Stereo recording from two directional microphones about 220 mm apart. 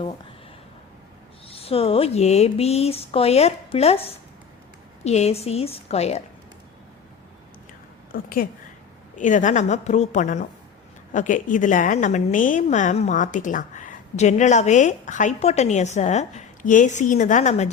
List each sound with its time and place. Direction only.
1.5 s speech: 25° left (ahead or behind)
8.1 s a woman's voice: 40° left (ahead or behind)